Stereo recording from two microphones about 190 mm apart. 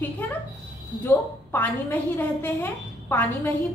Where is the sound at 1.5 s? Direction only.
10° left (ahead or behind).